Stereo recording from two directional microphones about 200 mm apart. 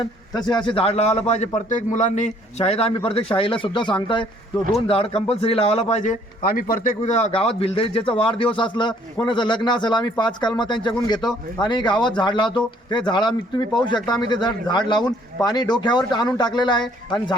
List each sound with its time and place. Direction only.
0.0 s a man's voice: 20° left (ahead or behind)
4.9 s a man's voice: 30° left (ahead or behind)